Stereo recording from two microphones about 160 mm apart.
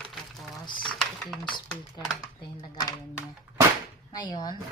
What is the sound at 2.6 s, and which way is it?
Speech, 30° left (ahead or behind).